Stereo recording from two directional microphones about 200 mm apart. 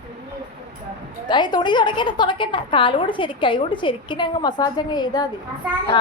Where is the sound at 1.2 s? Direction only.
20° left (ahead or behind).